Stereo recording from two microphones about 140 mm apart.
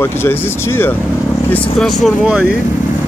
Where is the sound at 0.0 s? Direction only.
15° left (ahead or behind).